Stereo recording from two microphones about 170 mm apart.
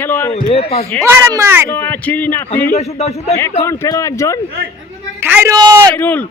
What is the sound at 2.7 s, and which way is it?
Speech, 40° left (ahead or behind).